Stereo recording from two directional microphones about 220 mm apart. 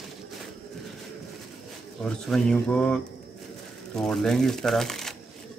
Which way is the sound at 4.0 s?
Centre (ahead or behind).